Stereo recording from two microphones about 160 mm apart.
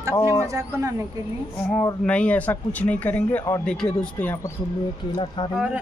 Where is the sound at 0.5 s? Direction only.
20° right (ahead or behind).